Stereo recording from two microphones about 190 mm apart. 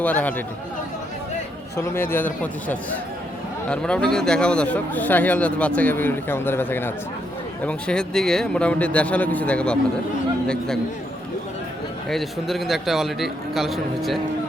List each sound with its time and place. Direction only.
0.0 s speech: 10° left (ahead or behind)
1.7 s speech: 10° left (ahead or behind)
12.0 s speech: centre (ahead or behind)